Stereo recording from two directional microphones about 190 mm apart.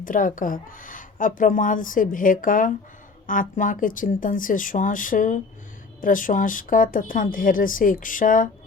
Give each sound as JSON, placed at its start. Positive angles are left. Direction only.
{"t": 0.0, "sound": "speech", "side_deg": 45}